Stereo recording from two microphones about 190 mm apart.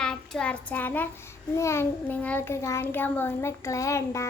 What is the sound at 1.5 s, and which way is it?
Child singing, 15° left (ahead or behind).